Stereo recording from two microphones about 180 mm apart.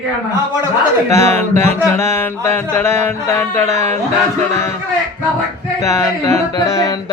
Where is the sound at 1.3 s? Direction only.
15° left (ahead or behind).